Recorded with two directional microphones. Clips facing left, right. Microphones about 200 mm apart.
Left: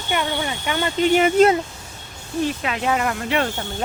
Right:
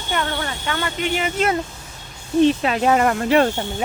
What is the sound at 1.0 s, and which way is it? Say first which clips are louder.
Speech: left 9 dB; 50° left (ahead or behind).